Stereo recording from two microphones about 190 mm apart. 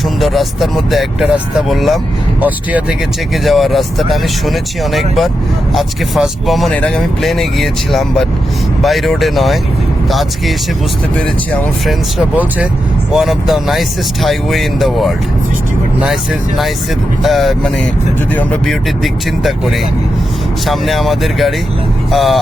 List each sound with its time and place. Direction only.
0.2 s speech: centre (ahead or behind)
3.4 s speech: centre (ahead or behind)
13.1 s speech: centre (ahead or behind)
17.2 s speech: centre (ahead or behind)